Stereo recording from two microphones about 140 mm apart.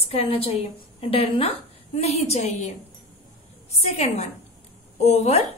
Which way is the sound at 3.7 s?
50° left (ahead or behind).